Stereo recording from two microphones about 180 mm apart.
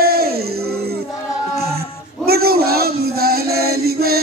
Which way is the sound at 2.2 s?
60° right (ahead or behind).